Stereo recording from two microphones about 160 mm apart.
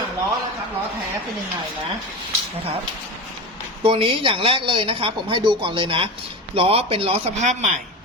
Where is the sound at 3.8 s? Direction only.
35° right (ahead or behind).